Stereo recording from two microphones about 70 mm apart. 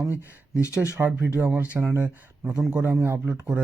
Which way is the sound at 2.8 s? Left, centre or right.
Right.